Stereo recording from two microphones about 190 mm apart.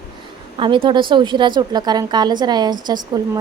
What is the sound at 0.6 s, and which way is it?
A woman's voice, 25° right (ahead or behind).